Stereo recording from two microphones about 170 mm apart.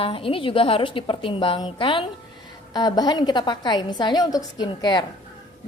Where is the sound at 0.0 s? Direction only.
30° left (ahead or behind).